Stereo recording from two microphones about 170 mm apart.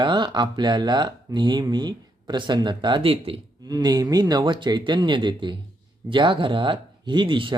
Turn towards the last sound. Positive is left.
turn(degrees=-30)  # may be behind; listen again after turning